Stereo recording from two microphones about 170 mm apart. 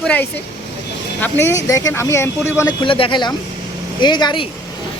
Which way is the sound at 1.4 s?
15° left (ahead or behind).